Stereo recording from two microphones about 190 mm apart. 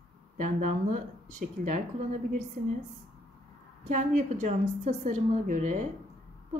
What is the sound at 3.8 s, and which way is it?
A woman's voice, 40° right (ahead or behind).